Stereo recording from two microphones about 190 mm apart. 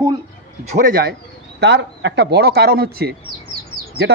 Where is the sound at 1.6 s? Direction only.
65° right (ahead or behind).